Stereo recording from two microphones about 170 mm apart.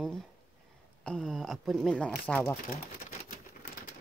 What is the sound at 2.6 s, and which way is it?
Crumpling, 55° left (ahead or behind).